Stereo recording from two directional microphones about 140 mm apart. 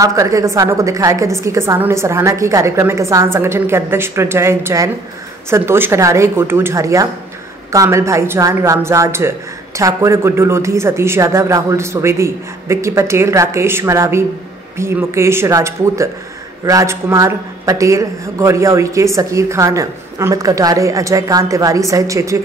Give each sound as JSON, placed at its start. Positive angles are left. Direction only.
{"t": 0.0, "sound": "a man's voice", "side_deg": -25}